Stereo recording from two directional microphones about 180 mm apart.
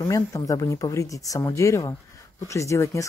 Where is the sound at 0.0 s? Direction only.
20° left (ahead or behind).